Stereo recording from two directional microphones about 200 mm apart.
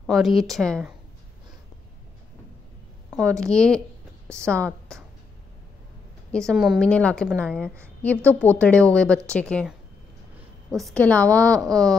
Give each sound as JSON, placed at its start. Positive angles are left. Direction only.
{"t": 0.0, "sound": "a woman's voice", "side_deg": 0}
{"t": 3.1, "sound": "a sound", "side_deg": 5}
{"t": 3.4, "sound": "a woman's voice", "side_deg": 5}
{"t": 6.3, "sound": "a woman's voice", "side_deg": 0}
{"t": 10.8, "sound": "a woman's voice", "side_deg": 5}
{"t": 11.5, "sound": "speech", "side_deg": -20}